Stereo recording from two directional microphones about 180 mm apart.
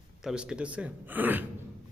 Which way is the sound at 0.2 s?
5° right (ahead or behind).